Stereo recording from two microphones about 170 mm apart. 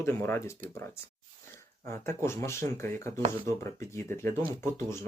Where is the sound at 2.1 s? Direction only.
15° left (ahead or behind).